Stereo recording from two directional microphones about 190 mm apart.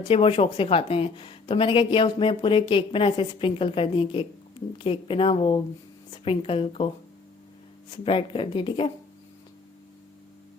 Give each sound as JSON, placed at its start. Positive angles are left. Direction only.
{"t": 0.0, "sound": "a woman's voice", "side_deg": 30}
{"t": 8.0, "sound": "a woman's voice", "side_deg": 30}